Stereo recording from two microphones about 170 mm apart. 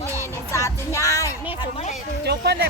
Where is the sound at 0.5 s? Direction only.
15° left (ahead or behind).